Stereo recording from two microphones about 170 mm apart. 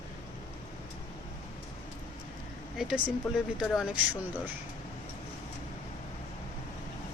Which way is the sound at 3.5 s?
5° right (ahead or behind).